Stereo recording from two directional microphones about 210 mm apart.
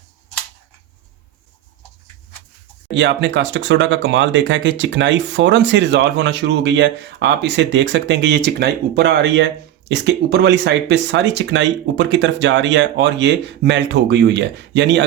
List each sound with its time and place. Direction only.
2.9 s speech: 60° right (ahead or behind)